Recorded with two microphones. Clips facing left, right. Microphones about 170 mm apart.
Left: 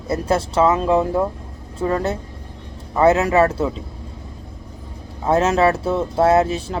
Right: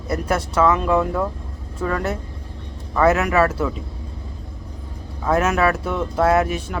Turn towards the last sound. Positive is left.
turn(degrees=25)  # may be behind; listen again after turning